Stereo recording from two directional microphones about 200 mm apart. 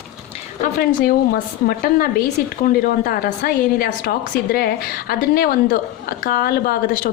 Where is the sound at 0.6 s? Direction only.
45° left (ahead or behind).